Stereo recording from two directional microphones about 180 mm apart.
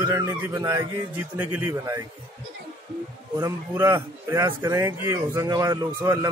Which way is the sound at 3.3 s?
15° right (ahead or behind).